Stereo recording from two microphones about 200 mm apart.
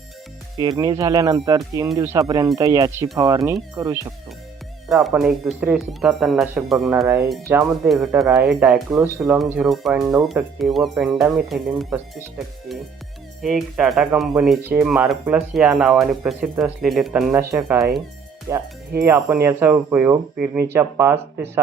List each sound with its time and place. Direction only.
0.5 s speech: 20° right (ahead or behind)
4.9 s speech: centre (ahead or behind)
7.4 s speech: 10° right (ahead or behind)
13.4 s speech: centre (ahead or behind)
18.5 s speech: 15° right (ahead or behind)